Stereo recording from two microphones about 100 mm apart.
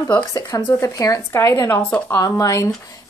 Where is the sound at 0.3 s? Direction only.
35° left (ahead or behind).